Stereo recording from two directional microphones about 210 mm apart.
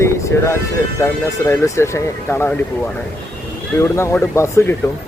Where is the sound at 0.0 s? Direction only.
15° left (ahead or behind).